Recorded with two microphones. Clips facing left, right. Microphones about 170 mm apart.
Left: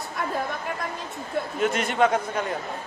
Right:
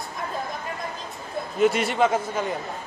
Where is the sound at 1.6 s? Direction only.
5° right (ahead or behind).